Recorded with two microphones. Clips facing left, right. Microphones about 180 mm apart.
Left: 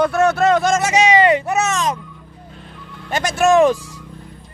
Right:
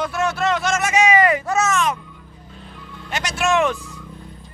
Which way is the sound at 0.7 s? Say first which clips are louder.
Left 2 dB; 25° left (ahead or behind).